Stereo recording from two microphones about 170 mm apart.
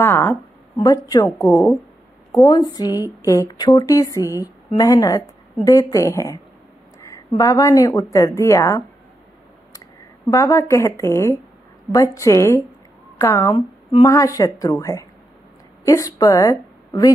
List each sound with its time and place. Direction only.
0.0 s a sound: 15° left (ahead or behind)
0.8 s a woman's voice: 20° left (ahead or behind)
10.3 s a woman's voice: 15° left (ahead or behind)